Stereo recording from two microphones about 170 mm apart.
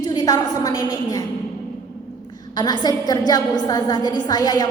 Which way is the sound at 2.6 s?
25° left (ahead or behind).